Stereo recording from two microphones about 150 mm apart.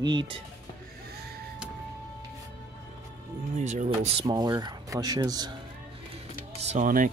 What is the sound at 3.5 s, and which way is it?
Speech, 55° right (ahead or behind).